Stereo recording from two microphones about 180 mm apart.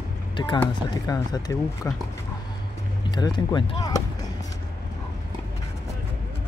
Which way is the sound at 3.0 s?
25° left (ahead or behind).